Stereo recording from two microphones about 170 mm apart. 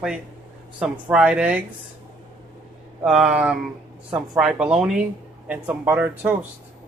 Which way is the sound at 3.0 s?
5° right (ahead or behind).